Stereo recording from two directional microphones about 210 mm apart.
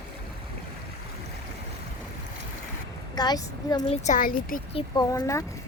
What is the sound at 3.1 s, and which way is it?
Speech, 20° left (ahead or behind).